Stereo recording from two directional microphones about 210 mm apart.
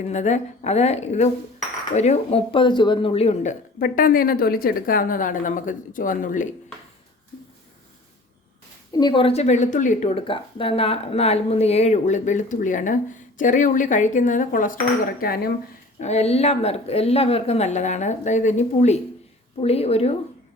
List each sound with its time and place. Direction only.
0.1 s speech: 35° left (ahead or behind)
8.9 s speech: 20° left (ahead or behind); by 15.5 s 45° left (ahead or behind)
16.0 s a woman's voice: 30° left (ahead or behind)